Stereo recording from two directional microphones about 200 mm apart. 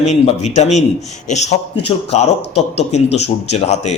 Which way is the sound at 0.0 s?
35° left (ahead or behind).